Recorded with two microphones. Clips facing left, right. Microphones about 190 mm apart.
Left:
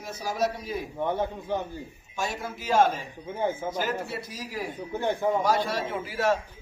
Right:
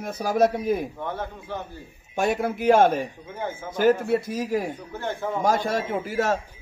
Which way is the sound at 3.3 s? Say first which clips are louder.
Left 7 dB; 15° left (ahead or behind).